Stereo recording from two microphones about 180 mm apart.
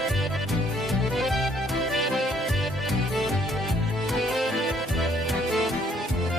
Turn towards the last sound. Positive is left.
turn(degrees=0)  # may be behind; listen again after turning